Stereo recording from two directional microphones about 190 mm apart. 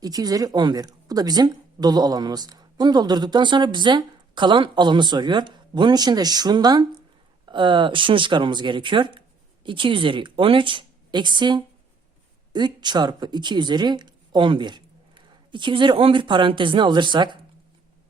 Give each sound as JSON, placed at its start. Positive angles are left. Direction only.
{"t": 0.0, "sound": "speech", "side_deg": -20}